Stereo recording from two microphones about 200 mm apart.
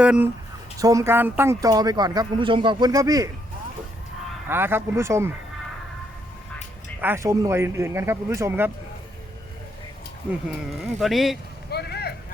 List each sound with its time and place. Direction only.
0.0 s speech: 5° right (ahead or behind)
0.8 s speech: 15° right (ahead or behind)
4.4 s speech: 10° right (ahead or behind)
7.0 s speech: 10° right (ahead or behind)
11.0 s speech: centre (ahead or behind)
11.7 s vehicle: 55° left (ahead or behind)